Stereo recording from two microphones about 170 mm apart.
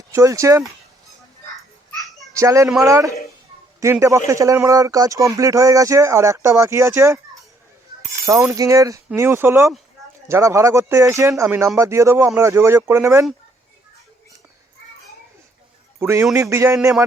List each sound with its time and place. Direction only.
0.1 s speech: 20° right (ahead or behind)
2.3 s speech: 20° right (ahead or behind)
8.3 s speech: 15° right (ahead or behind)
16.0 s a man's voice: 15° right (ahead or behind)